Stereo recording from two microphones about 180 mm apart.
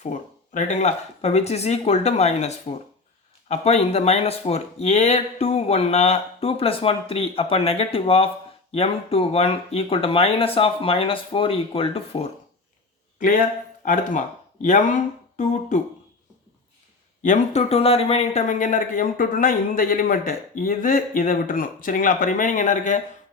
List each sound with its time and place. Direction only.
0.0 s speech: 45° left (ahead or behind)
13.8 s speech: 45° left (ahead or behind)
17.2 s speech: 40° left (ahead or behind)